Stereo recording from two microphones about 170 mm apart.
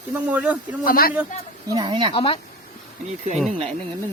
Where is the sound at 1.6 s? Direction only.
25° right (ahead or behind).